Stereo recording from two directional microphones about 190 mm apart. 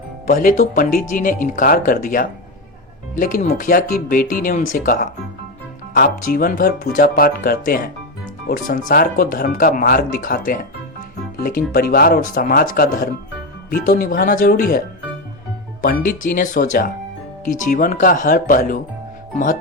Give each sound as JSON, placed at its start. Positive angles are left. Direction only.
{"t": 0.3, "sound": "speech", "side_deg": 45}